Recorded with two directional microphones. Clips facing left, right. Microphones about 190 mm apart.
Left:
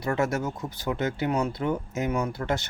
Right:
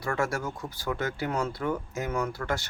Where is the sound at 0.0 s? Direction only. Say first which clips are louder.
Left 3 dB; 20° left (ahead or behind).